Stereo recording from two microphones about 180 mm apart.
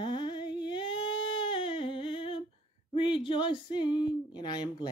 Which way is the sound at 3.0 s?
30° left (ahead or behind).